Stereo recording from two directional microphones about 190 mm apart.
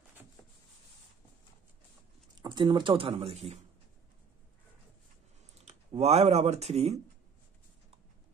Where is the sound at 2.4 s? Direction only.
25° right (ahead or behind).